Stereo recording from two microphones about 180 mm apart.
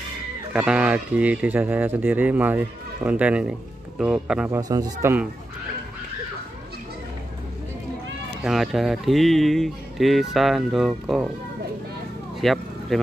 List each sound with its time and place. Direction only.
0.5 s speech: 5° right (ahead or behind)
4.6 s speech: 20° right (ahead or behind)
8.4 s speech: centre (ahead or behind)
12.4 s music: centre (ahead or behind)